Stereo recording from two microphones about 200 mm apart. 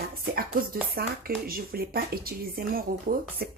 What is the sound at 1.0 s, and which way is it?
Speech, 45° right (ahead or behind).